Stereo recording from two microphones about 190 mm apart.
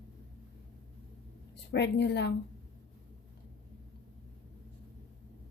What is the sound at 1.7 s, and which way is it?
Speech, 65° left (ahead or behind).